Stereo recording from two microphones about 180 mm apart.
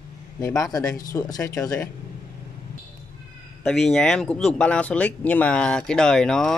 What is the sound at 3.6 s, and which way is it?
Speech, centre (ahead or behind).